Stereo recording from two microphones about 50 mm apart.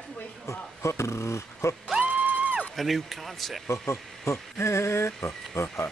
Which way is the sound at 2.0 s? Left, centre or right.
Right.